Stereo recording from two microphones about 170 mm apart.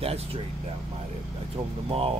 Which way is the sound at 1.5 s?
35° right (ahead or behind).